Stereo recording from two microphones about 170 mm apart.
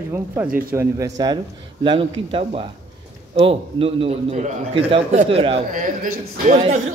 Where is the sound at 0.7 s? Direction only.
20° right (ahead or behind).